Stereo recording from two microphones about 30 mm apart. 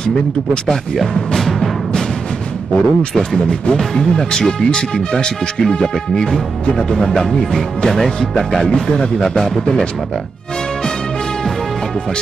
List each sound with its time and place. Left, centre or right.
0.9 s music: centre
2.7 s speech: left; by 8.5 s centre
8.8 s speech: left